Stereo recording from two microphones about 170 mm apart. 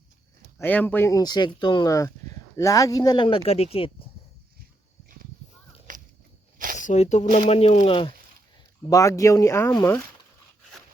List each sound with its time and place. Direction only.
0.6 s speech: 10° left (ahead or behind); by 4.1 s 30° left (ahead or behind)
5.9 s a sound: 50° right (ahead or behind)
6.7 s speech: 45° left (ahead or behind)
8.9 s speech: 20° left (ahead or behind)